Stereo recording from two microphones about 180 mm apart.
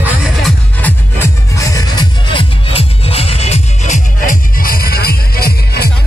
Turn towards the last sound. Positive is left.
turn(degrees=60)  # may be behind; listen again after turning